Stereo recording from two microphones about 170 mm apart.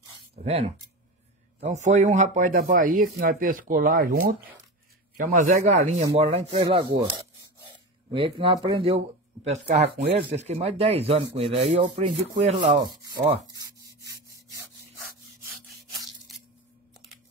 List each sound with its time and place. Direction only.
0.5 s rub: 35° right (ahead or behind)
1.6 s speech: 45° right (ahead or behind)
6.1 s rub: 35° right (ahead or behind)
15.5 s a sound: centre (ahead or behind)